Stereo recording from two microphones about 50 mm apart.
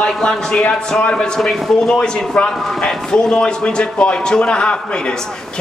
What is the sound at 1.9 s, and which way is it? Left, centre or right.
A man's voice, centre.